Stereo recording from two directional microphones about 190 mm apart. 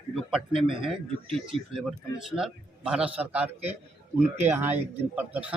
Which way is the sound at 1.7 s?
5° right (ahead or behind).